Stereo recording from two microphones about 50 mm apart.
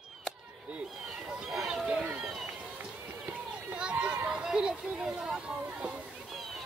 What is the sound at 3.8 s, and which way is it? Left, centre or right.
Run, right.